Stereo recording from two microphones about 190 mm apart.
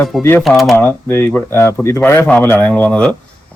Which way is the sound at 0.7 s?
10° left (ahead or behind).